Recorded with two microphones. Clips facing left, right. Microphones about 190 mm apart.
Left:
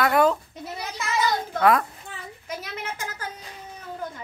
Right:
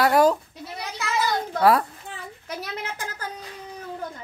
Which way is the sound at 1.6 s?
35° right (ahead or behind).